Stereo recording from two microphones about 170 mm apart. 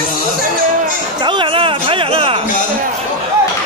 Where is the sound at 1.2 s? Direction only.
30° right (ahead or behind).